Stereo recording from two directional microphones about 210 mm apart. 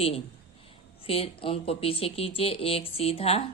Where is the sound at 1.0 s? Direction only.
25° left (ahead or behind).